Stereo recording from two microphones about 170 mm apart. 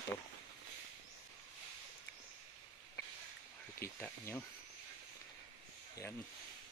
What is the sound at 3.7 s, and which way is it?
Speech, 15° left (ahead or behind).